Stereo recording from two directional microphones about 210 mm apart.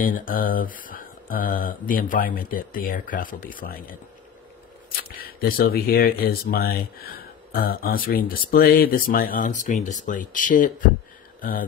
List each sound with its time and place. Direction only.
0.0 s speech: 40° left (ahead or behind)
4.9 s speech: 45° left (ahead or behind)